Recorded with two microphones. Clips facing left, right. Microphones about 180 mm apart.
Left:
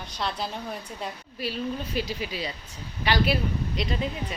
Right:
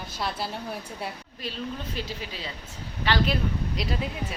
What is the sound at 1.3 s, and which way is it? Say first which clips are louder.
A woman's voice: left 6 dB; 10° left (ahead or behind).